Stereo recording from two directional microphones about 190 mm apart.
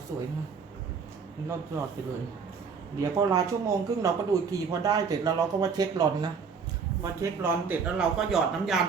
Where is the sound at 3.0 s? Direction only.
20° right (ahead or behind).